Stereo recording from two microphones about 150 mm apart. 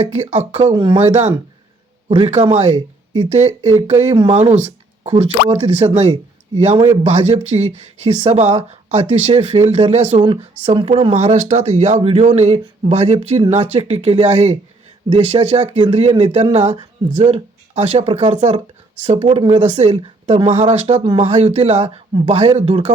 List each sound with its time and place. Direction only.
0.0 s speech: 50° right (ahead or behind)
0.7 s speech: 30° right (ahead or behind)
0.9 s speech: 45° right (ahead or behind)
2.0 s a man's voice: 30° right (ahead or behind)
2.3 s speech: 45° right (ahead or behind)